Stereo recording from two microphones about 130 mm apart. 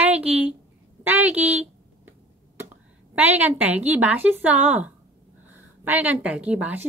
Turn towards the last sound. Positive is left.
turn(degrees=-10)  # may be behind; listen again after turning